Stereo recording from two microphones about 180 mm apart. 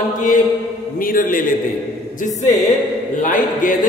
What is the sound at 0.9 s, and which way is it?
Speech, 50° left (ahead or behind).